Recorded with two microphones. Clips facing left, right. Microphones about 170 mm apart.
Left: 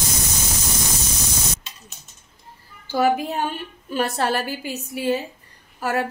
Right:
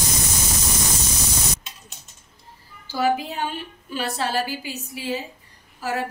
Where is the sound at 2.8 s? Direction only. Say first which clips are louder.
Left 3 dB; 55° left (ahead or behind).